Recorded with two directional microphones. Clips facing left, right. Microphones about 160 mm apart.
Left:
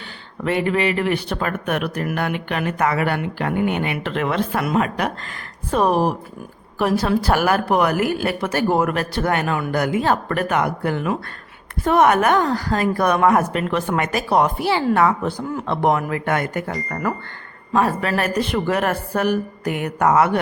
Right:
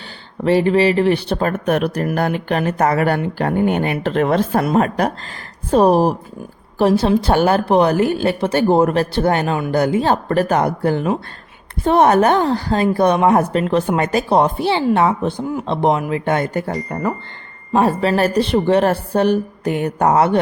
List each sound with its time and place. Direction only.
0.4 s a woman's voice: 30° right (ahead or behind)
16.9 s a woman's voice: 20° right (ahead or behind)